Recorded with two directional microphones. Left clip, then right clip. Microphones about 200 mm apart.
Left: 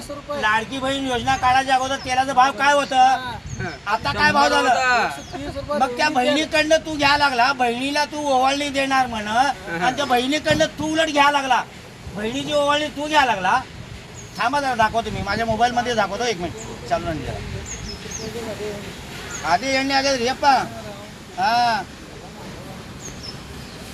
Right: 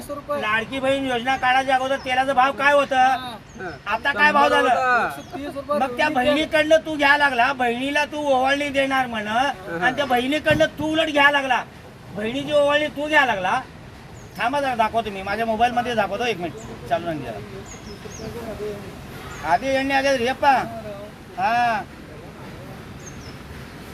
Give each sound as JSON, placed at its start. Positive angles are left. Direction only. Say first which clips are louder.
{"t": 0.3, "sound": "a man's voice", "louder": "left 3 dB", "side_deg": 5}
{"t": 19.5, "sound": "a man's voice", "louder": "even", "side_deg": 0}